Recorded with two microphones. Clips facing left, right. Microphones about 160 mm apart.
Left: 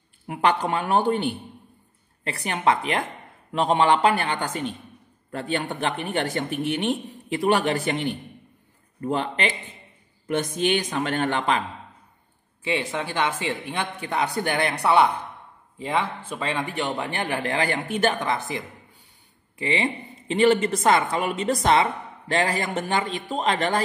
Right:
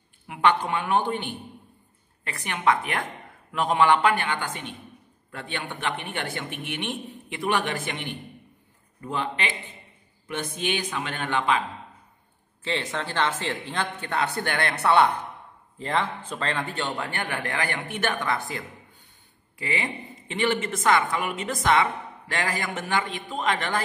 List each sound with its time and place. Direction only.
0.3 s speech: 40° left (ahead or behind)
2.2 s speech: 30° left (ahead or behind)
12.6 s speech: 10° left (ahead or behind); by 23.8 s 30° left (ahead or behind)